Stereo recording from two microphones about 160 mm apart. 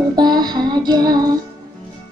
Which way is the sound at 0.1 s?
25° right (ahead or behind).